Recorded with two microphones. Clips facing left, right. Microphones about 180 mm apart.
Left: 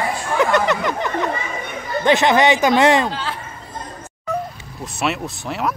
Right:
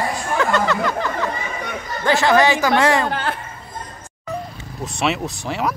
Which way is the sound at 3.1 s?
55° right (ahead or behind).